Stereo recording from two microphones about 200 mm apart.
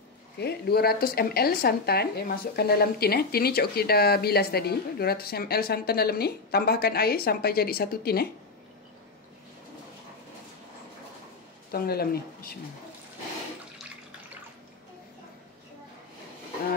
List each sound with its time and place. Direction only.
0.4 s speech: 55° left (ahead or behind)
11.7 s speech: 50° left (ahead or behind)